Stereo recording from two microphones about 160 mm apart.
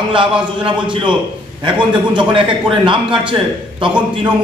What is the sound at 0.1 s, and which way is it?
A man's voice, 30° right (ahead or behind).